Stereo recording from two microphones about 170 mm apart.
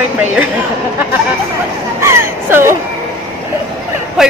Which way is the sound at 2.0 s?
15° right (ahead or behind).